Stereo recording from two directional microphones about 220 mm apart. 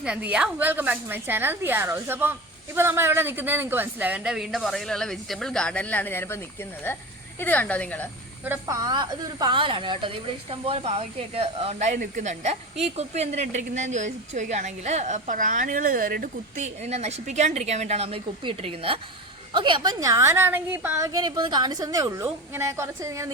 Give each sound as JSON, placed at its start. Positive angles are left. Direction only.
{"t": 0.0, "sound": "a woman's voice", "side_deg": -5}
{"t": 8.4, "sound": "a woman's voice", "side_deg": -15}